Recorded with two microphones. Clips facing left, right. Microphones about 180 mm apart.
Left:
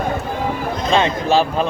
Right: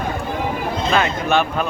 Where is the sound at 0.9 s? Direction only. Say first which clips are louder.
Left 3 dB; 30° left (ahead or behind).